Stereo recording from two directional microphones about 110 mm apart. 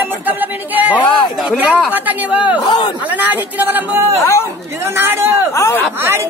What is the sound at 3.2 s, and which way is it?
A man's voice, 15° right (ahead or behind).